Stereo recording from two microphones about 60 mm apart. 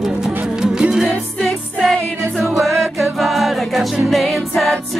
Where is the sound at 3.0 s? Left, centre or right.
Centre.